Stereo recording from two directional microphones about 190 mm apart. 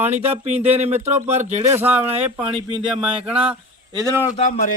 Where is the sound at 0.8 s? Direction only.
35° right (ahead or behind).